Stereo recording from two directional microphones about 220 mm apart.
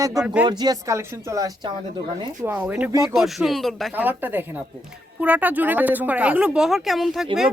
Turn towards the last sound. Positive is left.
turn(degrees=0)  # may be behind; listen again after turning